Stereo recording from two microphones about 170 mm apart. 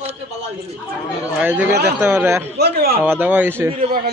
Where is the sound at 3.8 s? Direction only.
60° right (ahead or behind).